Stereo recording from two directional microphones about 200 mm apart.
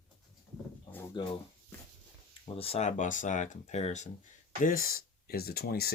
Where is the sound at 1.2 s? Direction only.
20° left (ahead or behind).